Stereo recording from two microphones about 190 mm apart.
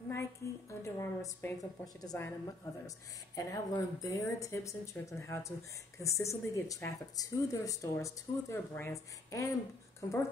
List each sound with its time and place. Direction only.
0.1 s a woman's voice: 15° left (ahead or behind)
3.3 s speech: 15° left (ahead or behind)